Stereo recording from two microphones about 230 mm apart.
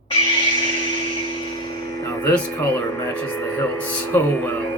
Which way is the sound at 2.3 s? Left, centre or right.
Centre.